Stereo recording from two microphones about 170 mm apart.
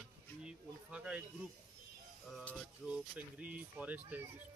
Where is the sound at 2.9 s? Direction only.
10° right (ahead or behind).